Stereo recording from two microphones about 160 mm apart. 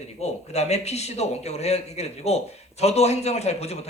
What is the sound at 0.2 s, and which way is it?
A man's voice, 40° left (ahead or behind).